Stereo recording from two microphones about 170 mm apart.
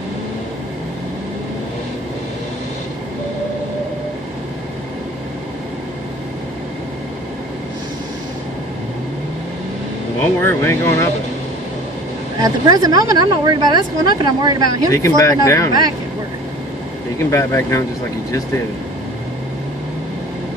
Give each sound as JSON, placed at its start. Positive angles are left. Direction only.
{"t": 10.4, "sound": "speech", "side_deg": 15}
{"t": 12.4, "sound": "speech", "side_deg": -25}
{"t": 14.9, "sound": "speech", "side_deg": 15}
{"t": 17.3, "sound": "speech", "side_deg": 15}